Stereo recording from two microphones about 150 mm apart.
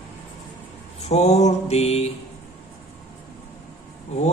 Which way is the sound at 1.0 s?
45° left (ahead or behind).